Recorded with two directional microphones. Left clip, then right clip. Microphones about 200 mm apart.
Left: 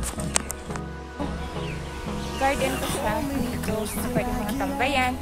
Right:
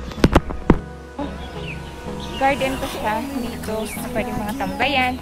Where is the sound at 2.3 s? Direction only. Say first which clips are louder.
Right 5 dB; centre (ahead or behind).